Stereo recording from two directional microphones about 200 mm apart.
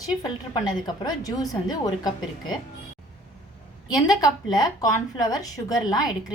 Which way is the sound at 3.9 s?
20° left (ahead or behind).